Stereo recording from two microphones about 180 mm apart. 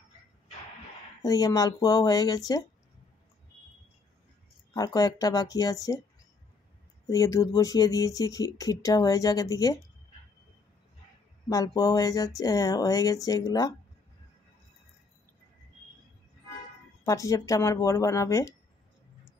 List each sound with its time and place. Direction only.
1.2 s speech: 20° left (ahead or behind)
4.7 s speech: 20° left (ahead or behind)
7.1 s speech: 20° left (ahead or behind)
11.4 s speech: 20° left (ahead or behind)
17.0 s speech: 15° left (ahead or behind)